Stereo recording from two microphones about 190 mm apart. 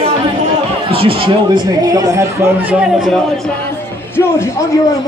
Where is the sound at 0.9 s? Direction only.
30° right (ahead or behind); by 2.7 s 15° right (ahead or behind).